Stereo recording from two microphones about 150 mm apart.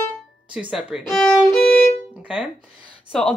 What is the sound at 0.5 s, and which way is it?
A woman's voice, 5° right (ahead or behind).